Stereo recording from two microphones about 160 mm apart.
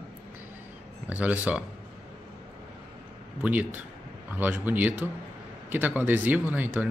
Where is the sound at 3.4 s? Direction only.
10° right (ahead or behind).